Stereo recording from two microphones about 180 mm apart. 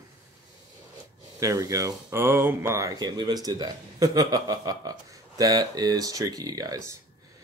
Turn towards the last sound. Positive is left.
turn(degrees=-20)  # may be behind; listen again after turning